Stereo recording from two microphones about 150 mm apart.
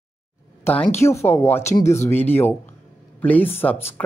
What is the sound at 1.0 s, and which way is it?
A woman's voice, 20° left (ahead or behind).